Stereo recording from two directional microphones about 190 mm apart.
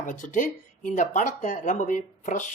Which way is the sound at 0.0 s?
45° left (ahead or behind).